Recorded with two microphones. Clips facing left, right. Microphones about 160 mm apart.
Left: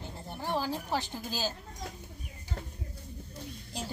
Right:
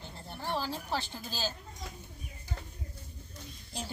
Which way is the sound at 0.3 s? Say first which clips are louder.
Left 2 dB; 15° left (ahead or behind).